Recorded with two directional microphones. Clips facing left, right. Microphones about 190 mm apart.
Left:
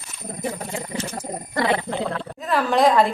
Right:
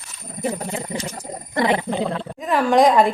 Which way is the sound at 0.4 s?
20° right (ahead or behind).